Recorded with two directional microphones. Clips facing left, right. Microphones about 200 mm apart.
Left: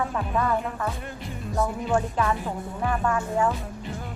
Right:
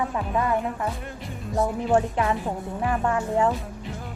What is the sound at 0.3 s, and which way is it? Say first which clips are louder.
Speech: right 1 dB; 15° right (ahead or behind).